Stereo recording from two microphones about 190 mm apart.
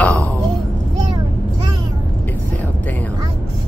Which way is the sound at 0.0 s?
5° left (ahead or behind).